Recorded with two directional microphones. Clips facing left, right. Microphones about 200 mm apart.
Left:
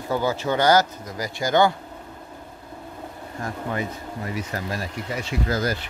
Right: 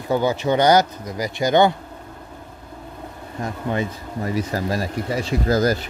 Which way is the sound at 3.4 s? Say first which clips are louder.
Right 4 dB; 25° right (ahead or behind).